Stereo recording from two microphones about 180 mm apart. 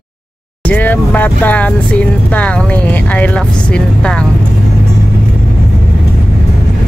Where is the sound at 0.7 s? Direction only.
10° left (ahead or behind).